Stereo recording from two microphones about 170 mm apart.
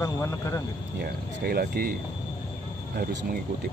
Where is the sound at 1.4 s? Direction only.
65° right (ahead or behind).